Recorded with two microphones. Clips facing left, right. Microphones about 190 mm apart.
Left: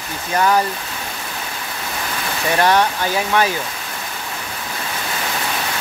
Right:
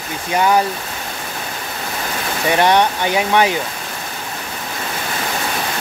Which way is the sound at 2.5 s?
20° right (ahead or behind).